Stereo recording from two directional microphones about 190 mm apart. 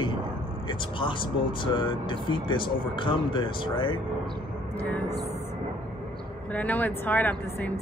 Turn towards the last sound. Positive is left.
turn(degrees=10)  # may be behind; listen again after turning